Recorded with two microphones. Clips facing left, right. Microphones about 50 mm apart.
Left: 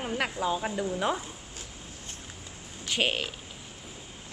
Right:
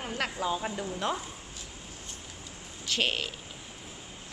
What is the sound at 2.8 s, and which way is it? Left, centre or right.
Speech, centre.